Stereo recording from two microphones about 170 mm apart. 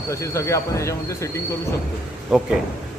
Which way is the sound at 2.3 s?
5° right (ahead or behind).